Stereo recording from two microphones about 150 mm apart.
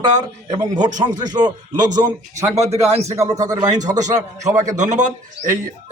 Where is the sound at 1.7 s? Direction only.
55° right (ahead or behind).